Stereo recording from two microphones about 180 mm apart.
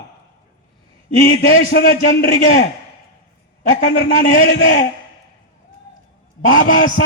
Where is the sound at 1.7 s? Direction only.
60° left (ahead or behind).